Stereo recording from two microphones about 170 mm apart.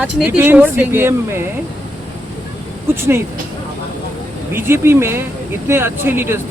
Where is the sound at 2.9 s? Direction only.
15° right (ahead or behind).